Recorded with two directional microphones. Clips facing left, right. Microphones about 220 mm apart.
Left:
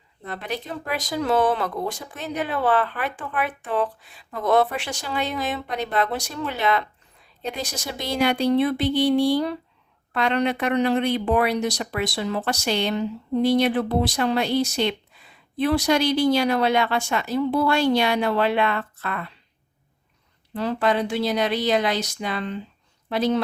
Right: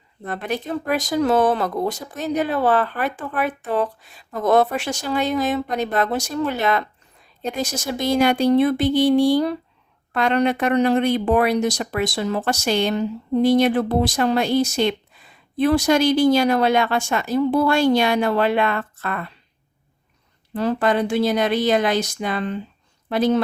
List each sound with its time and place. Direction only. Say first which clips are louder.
0.3 s speech: right 5 dB; 50° right (ahead or behind)
20.5 s speech: right 3 dB; 45° right (ahead or behind)